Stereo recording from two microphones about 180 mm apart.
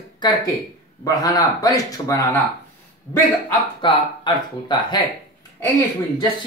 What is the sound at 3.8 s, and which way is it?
Speech, 25° left (ahead or behind).